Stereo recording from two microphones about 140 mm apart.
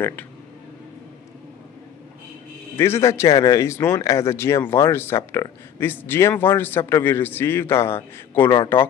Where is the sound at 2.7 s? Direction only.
20° left (ahead or behind).